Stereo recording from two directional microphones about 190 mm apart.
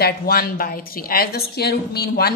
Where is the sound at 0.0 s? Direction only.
50° left (ahead or behind).